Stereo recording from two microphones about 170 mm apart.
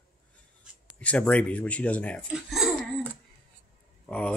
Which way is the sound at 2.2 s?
5° right (ahead or behind).